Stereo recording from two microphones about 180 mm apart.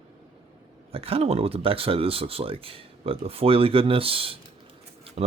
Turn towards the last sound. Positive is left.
turn(degrees=-35)  # may be behind; listen again after turning